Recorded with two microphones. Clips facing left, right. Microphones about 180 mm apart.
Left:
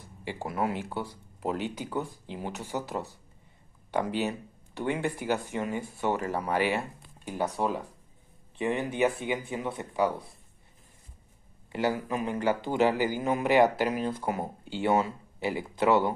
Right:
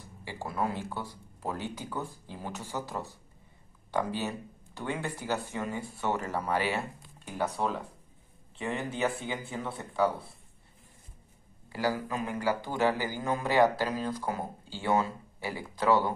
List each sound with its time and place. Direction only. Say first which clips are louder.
0.0 s speech: left 3 dB; 20° left (ahead or behind)
11.7 s speech: left 2 dB; 20° left (ahead or behind)